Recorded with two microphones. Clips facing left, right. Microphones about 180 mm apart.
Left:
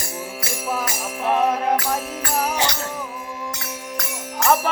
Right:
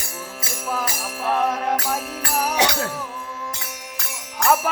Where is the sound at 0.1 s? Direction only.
20° left (ahead or behind).